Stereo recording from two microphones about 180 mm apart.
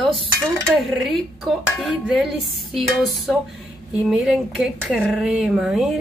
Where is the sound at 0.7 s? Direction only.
Centre (ahead or behind).